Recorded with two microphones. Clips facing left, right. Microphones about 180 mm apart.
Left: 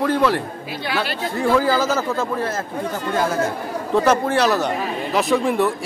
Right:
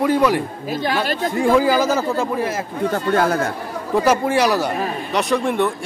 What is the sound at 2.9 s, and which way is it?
Speech, 60° right (ahead or behind).